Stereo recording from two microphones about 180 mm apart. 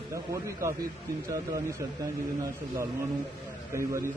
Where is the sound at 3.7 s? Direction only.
15° right (ahead or behind).